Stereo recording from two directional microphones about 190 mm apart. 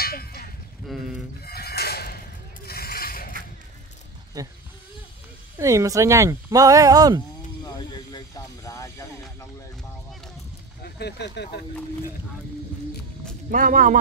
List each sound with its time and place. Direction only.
0.0 s livestock: 50° left (ahead or behind)
0.8 s a sound: centre (ahead or behind)
1.4 s sheep: 55° left (ahead or behind)
2.6 s mechanisms: 55° left (ahead or behind)
4.4 s speech: 20° right (ahead or behind)
5.6 s speech: 15° right (ahead or behind)
7.6 s vehicle: 20° left (ahead or behind)
8.6 s music: 15° left (ahead or behind)
10.8 s speech: 60° left (ahead or behind)
13.5 s speech: 45° right (ahead or behind)